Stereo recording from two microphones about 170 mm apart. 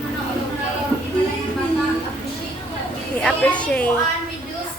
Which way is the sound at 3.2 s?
10° left (ahead or behind).